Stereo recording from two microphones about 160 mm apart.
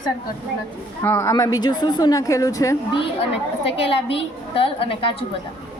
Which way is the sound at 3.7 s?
35° left (ahead or behind).